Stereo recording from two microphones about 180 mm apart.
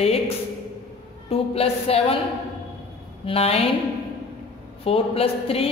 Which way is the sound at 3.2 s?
35° left (ahead or behind).